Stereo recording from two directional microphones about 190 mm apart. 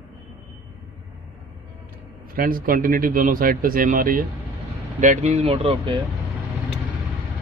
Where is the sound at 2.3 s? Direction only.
50° right (ahead or behind); by 5.9 s 30° right (ahead or behind).